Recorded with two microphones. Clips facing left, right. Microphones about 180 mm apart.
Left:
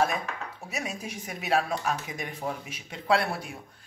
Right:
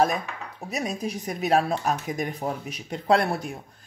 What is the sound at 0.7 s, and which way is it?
A man's voice, 35° right (ahead or behind).